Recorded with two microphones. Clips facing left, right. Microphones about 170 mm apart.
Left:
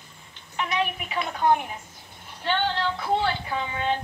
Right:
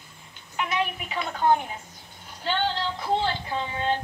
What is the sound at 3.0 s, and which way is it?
Speech, 20° right (ahead or behind).